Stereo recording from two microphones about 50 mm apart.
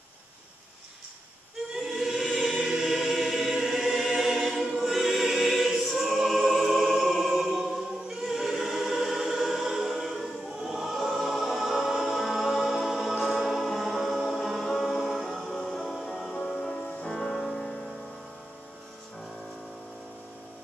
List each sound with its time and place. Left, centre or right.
1.7 s choir: centre
13.2 s music: centre